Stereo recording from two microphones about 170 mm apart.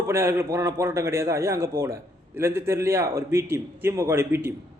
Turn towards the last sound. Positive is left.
turn(degrees=-15)  # may be behind; listen again after turning